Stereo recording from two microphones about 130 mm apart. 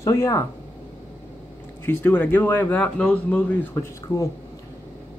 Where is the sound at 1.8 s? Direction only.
15° left (ahead or behind).